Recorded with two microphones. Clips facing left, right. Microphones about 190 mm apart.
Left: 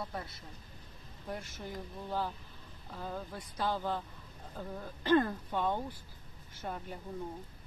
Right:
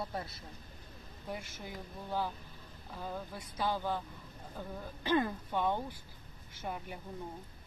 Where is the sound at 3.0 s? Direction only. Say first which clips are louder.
Left 1 dB; 5° right (ahead or behind).